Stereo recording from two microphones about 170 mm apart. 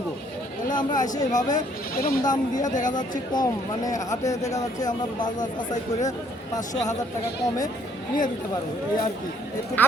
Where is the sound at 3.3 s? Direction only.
20° left (ahead or behind).